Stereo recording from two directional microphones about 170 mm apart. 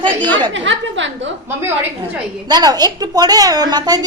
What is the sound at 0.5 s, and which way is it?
Speech, 90° right.